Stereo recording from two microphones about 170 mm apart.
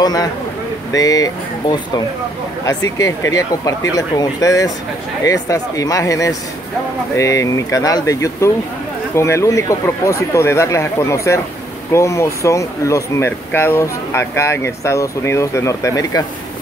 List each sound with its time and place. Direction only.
0.0 s speech: 20° left (ahead or behind)
3.0 s speech: 20° left (ahead or behind)